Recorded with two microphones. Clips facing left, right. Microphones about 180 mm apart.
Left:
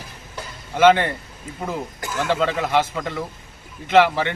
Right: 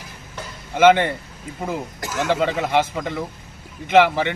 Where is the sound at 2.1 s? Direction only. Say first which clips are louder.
Right 1 dB; 15° right (ahead or behind).